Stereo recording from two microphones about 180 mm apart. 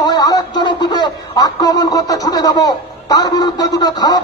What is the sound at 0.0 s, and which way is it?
A man's voice, 25° left (ahead or behind).